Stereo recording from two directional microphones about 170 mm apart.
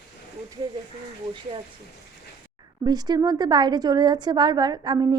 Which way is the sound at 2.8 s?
25° right (ahead or behind).